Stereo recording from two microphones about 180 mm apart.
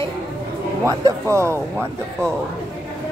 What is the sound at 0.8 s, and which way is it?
Speech, 15° right (ahead or behind).